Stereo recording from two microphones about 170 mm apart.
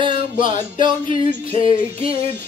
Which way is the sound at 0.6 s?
30° right (ahead or behind).